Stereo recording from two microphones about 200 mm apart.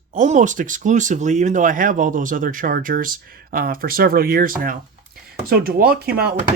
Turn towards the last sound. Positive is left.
turn(degrees=-50)  # may be behind; listen again after turning